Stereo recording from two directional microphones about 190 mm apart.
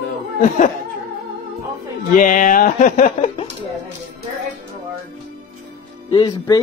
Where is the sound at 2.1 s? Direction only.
45° left (ahead or behind).